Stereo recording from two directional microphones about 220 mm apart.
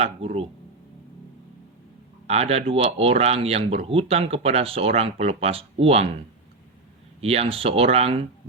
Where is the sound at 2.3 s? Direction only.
30° right (ahead or behind).